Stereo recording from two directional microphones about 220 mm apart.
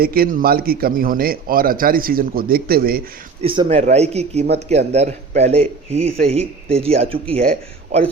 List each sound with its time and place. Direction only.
0.0 s a man's voice: 40° right (ahead or behind)
3.4 s speech: 25° right (ahead or behind)